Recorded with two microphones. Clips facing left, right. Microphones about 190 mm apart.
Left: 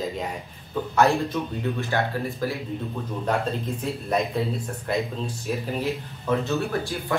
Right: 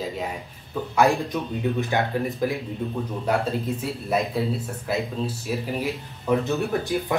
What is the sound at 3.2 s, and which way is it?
Speech, 5° right (ahead or behind).